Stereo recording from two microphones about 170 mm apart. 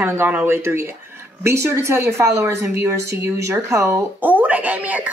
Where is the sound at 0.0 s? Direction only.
10° right (ahead or behind).